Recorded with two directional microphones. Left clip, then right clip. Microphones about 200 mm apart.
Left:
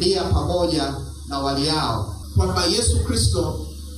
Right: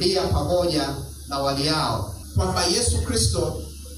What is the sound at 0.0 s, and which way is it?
Music, 20° right (ahead or behind).